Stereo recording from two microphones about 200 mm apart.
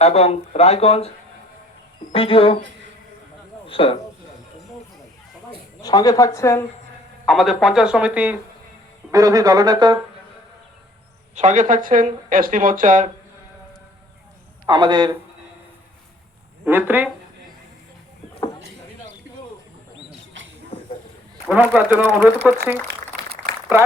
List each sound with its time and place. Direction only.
0.0 s speech: 30° left (ahead or behind)
2.1 s speech: 30° left (ahead or behind)
3.7 s a man's voice: 25° left (ahead or behind)
5.8 s speech: 20° left (ahead or behind)
7.3 s speech: centre (ahead or behind)
9.1 s speech: 15° right (ahead or behind)
11.3 s speech: 35° right (ahead or behind)
14.7 s speech: 20° right (ahead or behind)
16.6 s speech: 10° right (ahead or behind)
21.4 s a man's voice: 5° right (ahead or behind)